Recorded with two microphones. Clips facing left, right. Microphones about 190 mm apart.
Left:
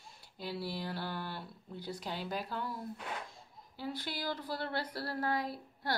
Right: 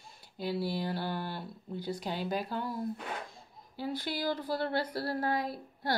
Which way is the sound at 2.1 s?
Centre (ahead or behind).